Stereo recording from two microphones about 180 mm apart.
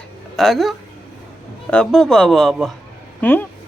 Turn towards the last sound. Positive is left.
turn(degrees=10)  # may be behind; listen again after turning